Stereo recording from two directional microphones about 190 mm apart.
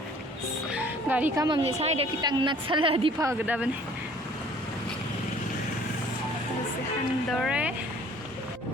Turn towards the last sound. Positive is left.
turn(degrees=-5)  # may be behind; listen again after turning